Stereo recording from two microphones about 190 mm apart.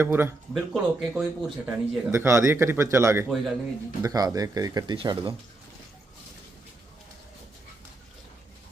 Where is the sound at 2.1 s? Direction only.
15° right (ahead or behind).